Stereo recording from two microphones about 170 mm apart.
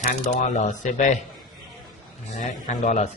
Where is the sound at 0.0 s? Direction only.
50° left (ahead or behind).